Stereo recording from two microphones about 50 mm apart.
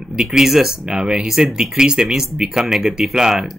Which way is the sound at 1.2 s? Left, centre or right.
Centre.